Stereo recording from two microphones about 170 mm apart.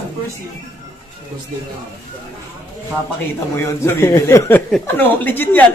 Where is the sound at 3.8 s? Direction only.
15° left (ahead or behind).